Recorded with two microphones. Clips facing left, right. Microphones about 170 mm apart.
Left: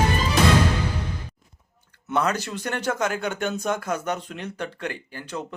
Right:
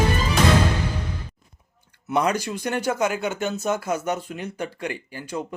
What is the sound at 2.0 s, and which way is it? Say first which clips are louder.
Speech: right 2 dB; 15° right (ahead or behind).